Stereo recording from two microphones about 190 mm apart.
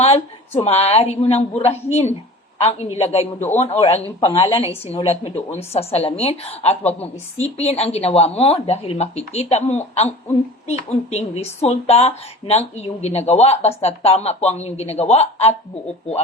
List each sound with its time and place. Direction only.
0.6 s a woman's voice: 35° left (ahead or behind)